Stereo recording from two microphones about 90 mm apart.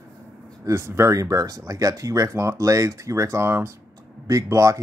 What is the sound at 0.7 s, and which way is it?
Speech, 30° right (ahead or behind).